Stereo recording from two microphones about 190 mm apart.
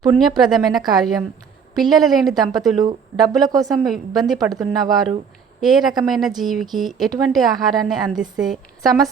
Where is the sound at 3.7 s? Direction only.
Centre (ahead or behind).